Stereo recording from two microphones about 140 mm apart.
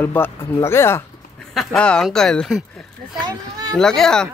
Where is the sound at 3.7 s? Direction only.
5° left (ahead or behind).